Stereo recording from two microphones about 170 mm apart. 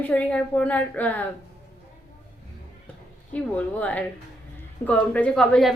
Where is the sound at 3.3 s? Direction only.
10° left (ahead or behind).